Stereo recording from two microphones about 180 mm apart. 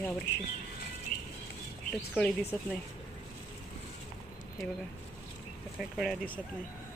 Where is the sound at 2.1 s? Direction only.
5° left (ahead or behind).